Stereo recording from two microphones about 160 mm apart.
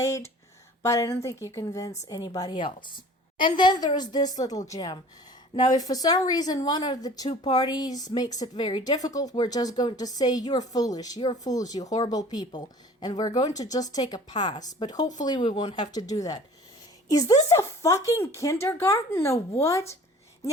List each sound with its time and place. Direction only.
0.8 s speech: 20° left (ahead or behind)